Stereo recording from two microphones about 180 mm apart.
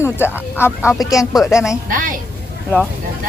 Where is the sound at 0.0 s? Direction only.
15° left (ahead or behind).